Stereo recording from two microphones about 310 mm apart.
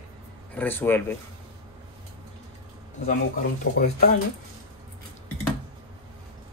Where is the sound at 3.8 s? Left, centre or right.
Left.